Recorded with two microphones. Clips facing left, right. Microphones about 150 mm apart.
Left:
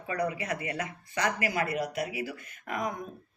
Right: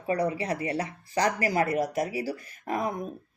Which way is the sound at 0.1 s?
30° right (ahead or behind).